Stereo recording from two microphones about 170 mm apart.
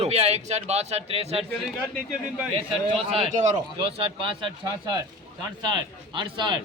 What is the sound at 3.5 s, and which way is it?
Speech, 30° right (ahead or behind).